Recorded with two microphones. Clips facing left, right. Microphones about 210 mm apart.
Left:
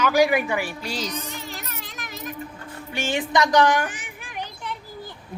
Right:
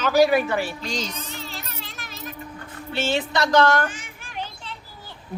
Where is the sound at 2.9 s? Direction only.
15° left (ahead or behind).